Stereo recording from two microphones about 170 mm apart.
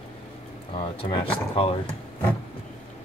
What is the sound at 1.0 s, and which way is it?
Speech, 30° left (ahead or behind).